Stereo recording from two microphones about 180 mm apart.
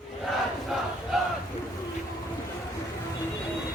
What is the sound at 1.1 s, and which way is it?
Battle cry, centre (ahead or behind).